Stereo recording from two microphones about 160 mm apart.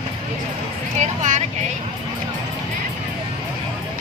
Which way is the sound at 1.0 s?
45° right (ahead or behind).